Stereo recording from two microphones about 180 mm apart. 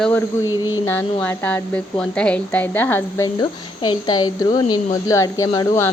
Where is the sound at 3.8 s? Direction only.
25° left (ahead or behind).